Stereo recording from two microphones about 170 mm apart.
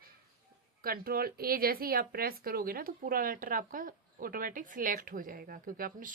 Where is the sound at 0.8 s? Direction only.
60° right (ahead or behind).